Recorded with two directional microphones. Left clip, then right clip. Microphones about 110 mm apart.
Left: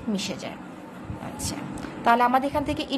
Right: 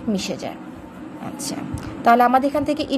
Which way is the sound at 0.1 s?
35° right (ahead or behind).